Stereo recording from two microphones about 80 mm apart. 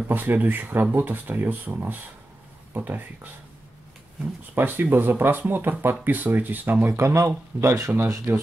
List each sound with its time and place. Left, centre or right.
0.1 s speech: right
4.6 s speech: right
7.0 s speech: right